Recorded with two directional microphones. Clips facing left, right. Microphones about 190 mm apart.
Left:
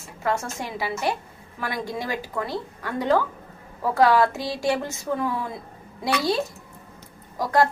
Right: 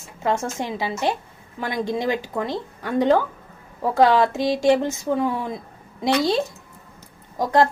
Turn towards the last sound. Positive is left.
turn(degrees=-20)  # may be behind; listen again after turning